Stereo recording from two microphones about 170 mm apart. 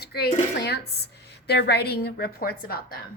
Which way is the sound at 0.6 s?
75° left (ahead or behind).